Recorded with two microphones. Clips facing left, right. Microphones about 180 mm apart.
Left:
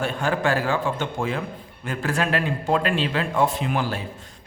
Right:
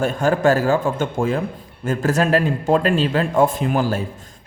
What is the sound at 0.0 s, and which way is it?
A man's voice, 45° right (ahead or behind).